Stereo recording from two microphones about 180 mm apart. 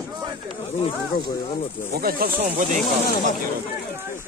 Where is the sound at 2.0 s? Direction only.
55° right (ahead or behind).